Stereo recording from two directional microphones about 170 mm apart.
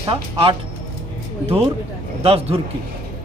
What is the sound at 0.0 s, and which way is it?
Speech, 30° right (ahead or behind).